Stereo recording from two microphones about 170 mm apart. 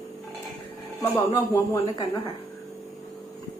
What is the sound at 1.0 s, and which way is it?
Speech, 15° left (ahead or behind).